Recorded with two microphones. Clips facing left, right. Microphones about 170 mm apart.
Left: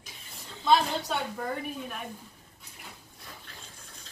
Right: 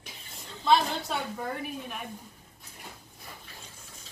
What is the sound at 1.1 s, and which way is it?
Speech, centre (ahead or behind).